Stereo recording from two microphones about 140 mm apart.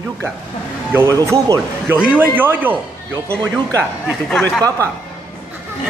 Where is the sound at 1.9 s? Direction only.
10° right (ahead or behind).